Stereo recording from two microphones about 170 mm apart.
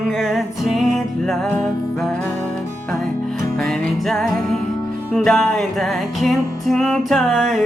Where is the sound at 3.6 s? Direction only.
5° left (ahead or behind).